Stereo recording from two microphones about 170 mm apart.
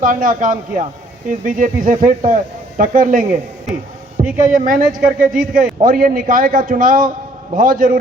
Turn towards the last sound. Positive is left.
turn(degrees=-55)  # may be behind; listen again after turning